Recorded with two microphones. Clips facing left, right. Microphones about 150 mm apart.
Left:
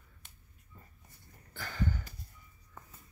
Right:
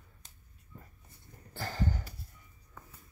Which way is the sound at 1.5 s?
35° right (ahead or behind).